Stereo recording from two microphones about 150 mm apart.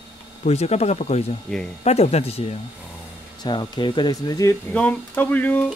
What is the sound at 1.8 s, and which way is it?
Speech, 45° left (ahead or behind).